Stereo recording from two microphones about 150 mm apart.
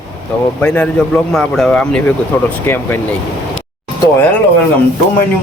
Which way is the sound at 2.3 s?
15° left (ahead or behind).